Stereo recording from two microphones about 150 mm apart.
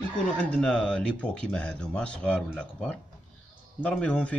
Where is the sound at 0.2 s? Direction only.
5° left (ahead or behind).